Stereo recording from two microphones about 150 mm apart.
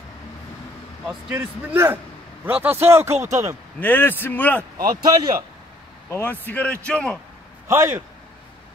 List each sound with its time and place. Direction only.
1.3 s speech: 15° right (ahead or behind)
3.8 s a man's voice: 15° left (ahead or behind)
4.8 s a man's voice: 30° right (ahead or behind)
6.0 s a man's voice: 15° left (ahead or behind)
7.6 s a man's voice: 20° right (ahead or behind)